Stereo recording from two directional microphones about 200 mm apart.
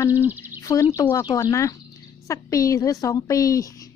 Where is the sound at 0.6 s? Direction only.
15° left (ahead or behind).